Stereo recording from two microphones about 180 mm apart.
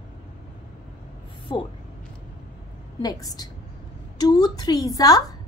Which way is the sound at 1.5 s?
25° left (ahead or behind).